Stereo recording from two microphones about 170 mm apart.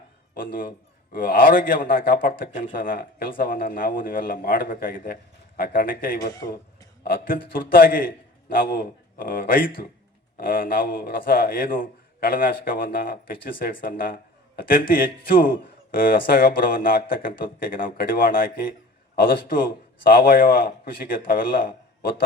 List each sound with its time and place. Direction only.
1.1 s speech: 60° left (ahead or behind)
6.3 s speech: 20° left (ahead or behind)
7.0 s a man's voice: 60° left (ahead or behind)